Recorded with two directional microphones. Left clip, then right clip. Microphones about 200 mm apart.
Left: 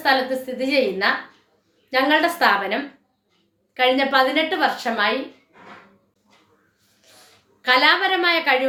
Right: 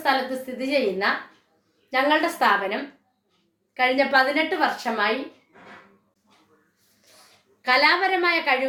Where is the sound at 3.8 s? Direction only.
15° left (ahead or behind).